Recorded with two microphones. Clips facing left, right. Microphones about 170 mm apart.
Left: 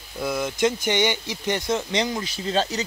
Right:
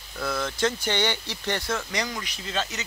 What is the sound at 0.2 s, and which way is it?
Speech, 15° left (ahead or behind).